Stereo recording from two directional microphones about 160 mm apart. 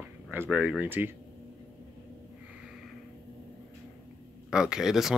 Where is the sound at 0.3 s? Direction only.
10° right (ahead or behind).